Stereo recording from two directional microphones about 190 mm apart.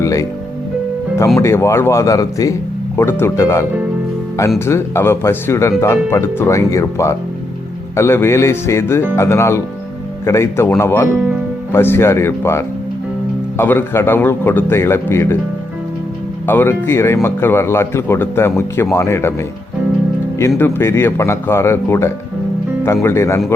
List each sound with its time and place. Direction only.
0.0 s music: 15° left (ahead or behind)
1.4 s speech: 15° left (ahead or behind)
16.5 s speech: 10° left (ahead or behind)
20.6 s speech: 15° left (ahead or behind)